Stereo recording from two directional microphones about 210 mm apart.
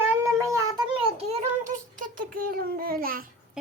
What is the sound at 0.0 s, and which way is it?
Child singing, 15° right (ahead or behind).